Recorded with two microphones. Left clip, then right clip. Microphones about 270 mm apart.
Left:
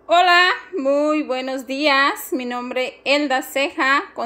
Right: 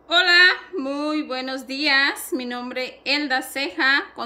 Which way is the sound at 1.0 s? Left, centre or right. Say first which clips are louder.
Left 5 dB; centre.